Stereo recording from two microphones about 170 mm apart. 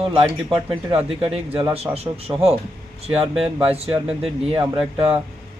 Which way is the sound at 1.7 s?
35° right (ahead or behind).